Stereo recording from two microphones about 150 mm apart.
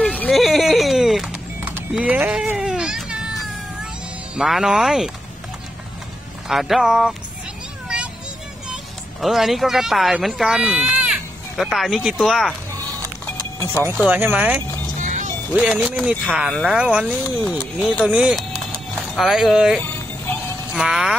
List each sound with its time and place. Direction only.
0.0 s music: 5° left (ahead or behind)
4.4 s speech: 5° right (ahead or behind)
6.5 s speech: centre (ahead or behind)
9.2 s speech: centre (ahead or behind)
13.6 s speech: 15° left (ahead or behind)
14.0 s speech: 10° right (ahead or behind)
15.0 s music: 55° right (ahead or behind)
15.5 s speech: 5° right (ahead or behind)
19.8 s music: 15° left (ahead or behind)
20.7 s speech: 5° right (ahead or behind)